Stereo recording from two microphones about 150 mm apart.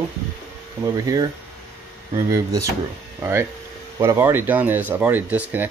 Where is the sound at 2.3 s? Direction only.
20° right (ahead or behind).